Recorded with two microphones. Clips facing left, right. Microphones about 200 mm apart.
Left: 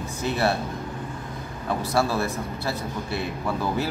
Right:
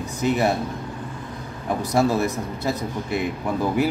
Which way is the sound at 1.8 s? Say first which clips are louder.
Right 4 dB; 20° right (ahead or behind).